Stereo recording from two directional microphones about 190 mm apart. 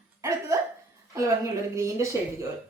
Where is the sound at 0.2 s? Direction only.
15° right (ahead or behind).